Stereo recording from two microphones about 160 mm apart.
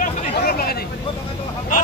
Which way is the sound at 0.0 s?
70° left (ahead or behind).